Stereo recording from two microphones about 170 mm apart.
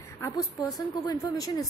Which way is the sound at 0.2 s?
20° left (ahead or behind).